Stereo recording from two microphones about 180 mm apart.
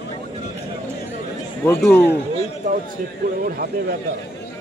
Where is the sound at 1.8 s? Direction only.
10° left (ahead or behind).